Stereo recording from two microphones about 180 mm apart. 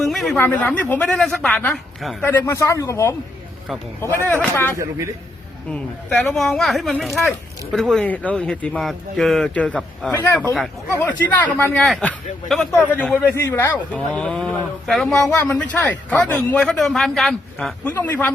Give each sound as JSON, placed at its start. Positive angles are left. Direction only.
{"t": 0.0, "sound": "a sound", "side_deg": 0}
{"t": 0.3, "sound": "speech", "side_deg": 10}
{"t": 2.2, "sound": "speech", "side_deg": 15}
{"t": 4.3, "sound": "speech", "side_deg": 10}
{"t": 4.8, "sound": "a man's voice", "side_deg": -15}
{"t": 5.7, "sound": "speech", "side_deg": 10}